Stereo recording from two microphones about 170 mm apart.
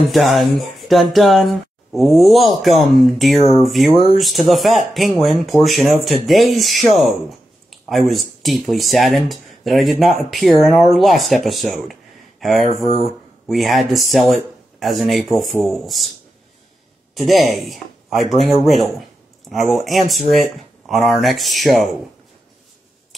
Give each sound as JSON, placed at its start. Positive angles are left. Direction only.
{"t": 0.1, "sound": "speech", "side_deg": 0}
{"t": 12.6, "sound": "speech", "side_deg": -40}
{"t": 13.5, "sound": "speech", "side_deg": 0}
{"t": 17.1, "sound": "speech", "side_deg": 0}